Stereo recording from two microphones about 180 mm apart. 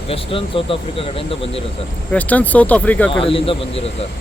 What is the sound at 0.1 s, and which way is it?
Speech, 30° left (ahead or behind).